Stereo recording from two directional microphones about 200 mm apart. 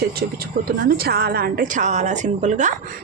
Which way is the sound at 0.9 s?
50° right (ahead or behind).